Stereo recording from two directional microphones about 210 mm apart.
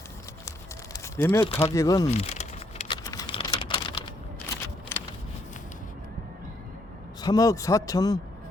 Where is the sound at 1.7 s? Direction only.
15° left (ahead or behind).